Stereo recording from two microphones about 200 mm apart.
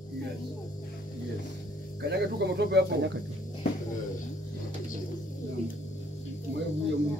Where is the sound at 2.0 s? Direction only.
55° right (ahead or behind).